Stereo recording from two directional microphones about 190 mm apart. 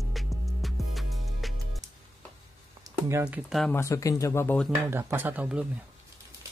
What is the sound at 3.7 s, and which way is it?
Speech, 15° left (ahead or behind).